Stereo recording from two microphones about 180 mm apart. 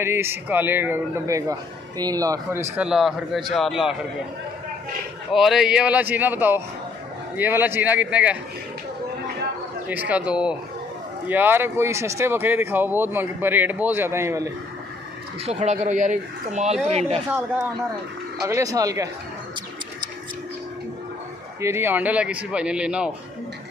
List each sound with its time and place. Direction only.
0.0 s a man's voice: 15° right (ahead or behind)
5.3 s a man's voice: centre (ahead or behind)
9.8 s a man's voice: 10° right (ahead or behind)
15.4 s speech: 35° right (ahead or behind)
18.5 s speech: 20° right (ahead or behind)
21.5 s a man's voice: 15° right (ahead or behind)